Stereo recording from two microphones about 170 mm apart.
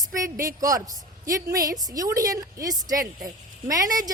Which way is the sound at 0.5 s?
20° right (ahead or behind).